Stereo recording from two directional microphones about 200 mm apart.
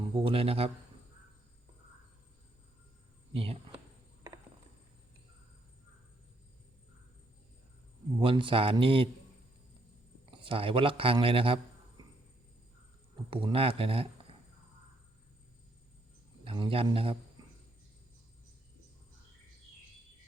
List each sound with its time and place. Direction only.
0.0 s speech: 25° right (ahead or behind)
3.3 s speech: 30° right (ahead or behind)
8.2 s speech: 25° right (ahead or behind)
10.3 s speech: 25° right (ahead or behind)
12.0 s a sound: 20° right (ahead or behind)
13.3 s speech: 25° right (ahead or behind)
16.4 s a man's voice: 25° right (ahead or behind)
17.4 s cricket: 20° right (ahead or behind)